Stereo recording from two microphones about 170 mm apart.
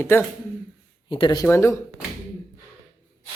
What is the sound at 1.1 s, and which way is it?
Speech, 30° left (ahead or behind).